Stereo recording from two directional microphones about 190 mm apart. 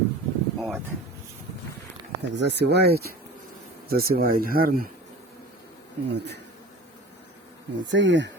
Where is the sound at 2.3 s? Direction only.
65° right (ahead or behind).